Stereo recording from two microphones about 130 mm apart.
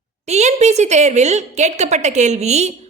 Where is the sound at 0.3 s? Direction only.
60° right (ahead or behind).